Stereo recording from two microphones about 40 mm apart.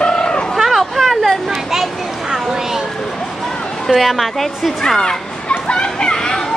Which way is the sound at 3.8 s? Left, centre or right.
Centre.